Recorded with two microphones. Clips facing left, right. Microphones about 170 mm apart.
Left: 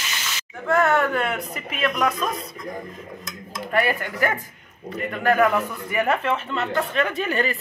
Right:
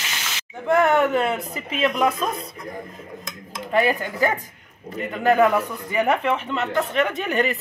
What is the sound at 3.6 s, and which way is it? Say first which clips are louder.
Speech: right 2 dB; 15° right (ahead or behind).